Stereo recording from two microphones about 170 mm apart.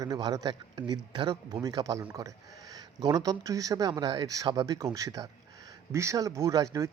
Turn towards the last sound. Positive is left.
turn(degrees=-20)  # may be behind; listen again after turning